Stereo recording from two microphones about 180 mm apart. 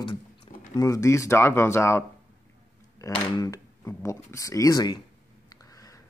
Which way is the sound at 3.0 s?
15° left (ahead or behind).